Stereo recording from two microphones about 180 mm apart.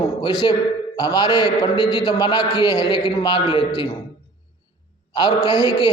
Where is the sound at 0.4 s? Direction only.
25° left (ahead or behind).